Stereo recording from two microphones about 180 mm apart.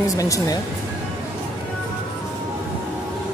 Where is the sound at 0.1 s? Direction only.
20° left (ahead or behind).